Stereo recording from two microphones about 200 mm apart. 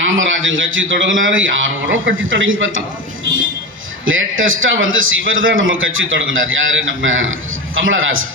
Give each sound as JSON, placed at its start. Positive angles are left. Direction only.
{"t": 0.1, "sound": "a man's voice", "side_deg": -75}
{"t": 4.0, "sound": "a man's voice", "side_deg": -80}